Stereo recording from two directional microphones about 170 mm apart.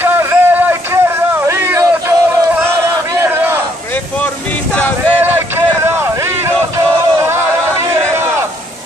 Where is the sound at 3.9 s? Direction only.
10° left (ahead or behind).